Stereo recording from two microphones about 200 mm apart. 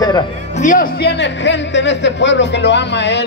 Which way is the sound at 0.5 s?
40° left (ahead or behind).